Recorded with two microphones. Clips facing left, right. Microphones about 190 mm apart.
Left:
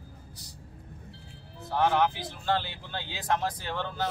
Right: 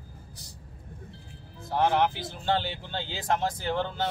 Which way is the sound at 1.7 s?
25° right (ahead or behind).